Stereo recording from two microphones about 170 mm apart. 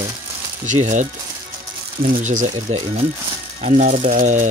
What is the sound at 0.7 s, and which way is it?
Speech, 45° right (ahead or behind).